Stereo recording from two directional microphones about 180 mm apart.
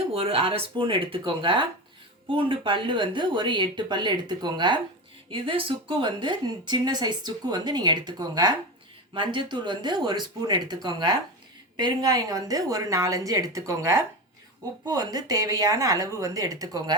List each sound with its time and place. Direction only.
0.1 s speech: 30° right (ahead or behind)